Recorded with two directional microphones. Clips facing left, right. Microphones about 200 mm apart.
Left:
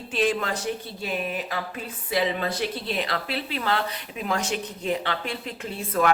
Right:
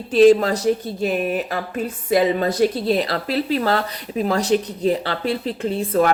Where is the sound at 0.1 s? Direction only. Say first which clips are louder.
Right 13 dB; 40° right (ahead or behind).